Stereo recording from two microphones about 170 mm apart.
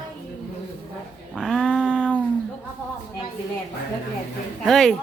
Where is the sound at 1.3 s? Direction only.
Centre (ahead or behind).